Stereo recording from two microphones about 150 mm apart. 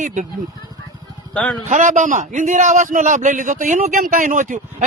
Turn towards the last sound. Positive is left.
turn(degrees=-60)  # may be behind; listen again after turning